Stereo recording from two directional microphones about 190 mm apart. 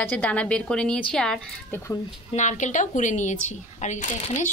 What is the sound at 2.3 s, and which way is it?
Speech, 40° left (ahead or behind).